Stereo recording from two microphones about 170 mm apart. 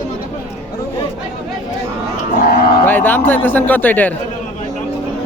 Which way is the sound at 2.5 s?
65° left (ahead or behind).